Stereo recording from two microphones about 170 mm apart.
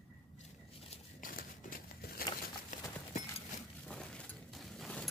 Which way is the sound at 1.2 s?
55° left (ahead or behind).